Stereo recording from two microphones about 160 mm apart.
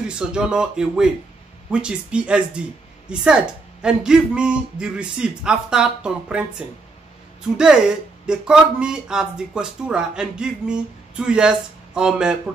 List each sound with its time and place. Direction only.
0.1 s speech: 5° right (ahead or behind)
7.5 s speech: 5° right (ahead or behind)